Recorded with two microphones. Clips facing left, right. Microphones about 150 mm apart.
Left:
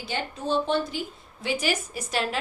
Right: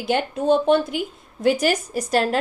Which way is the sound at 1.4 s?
40° right (ahead or behind).